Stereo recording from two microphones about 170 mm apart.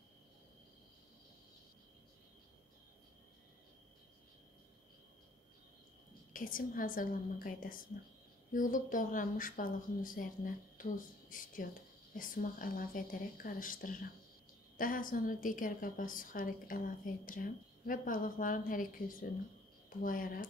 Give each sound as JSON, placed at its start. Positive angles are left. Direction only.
{"t": 6.3, "sound": "a woman's voice", "side_deg": 55}